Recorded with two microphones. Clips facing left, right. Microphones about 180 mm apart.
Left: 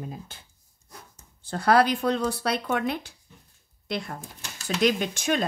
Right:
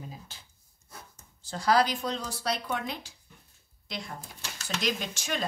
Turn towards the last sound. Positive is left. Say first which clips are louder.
# left 8 dB
turn(degrees=55)  # may be behind; listen again after turning